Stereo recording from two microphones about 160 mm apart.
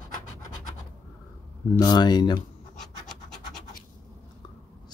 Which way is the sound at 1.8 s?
25° left (ahead or behind).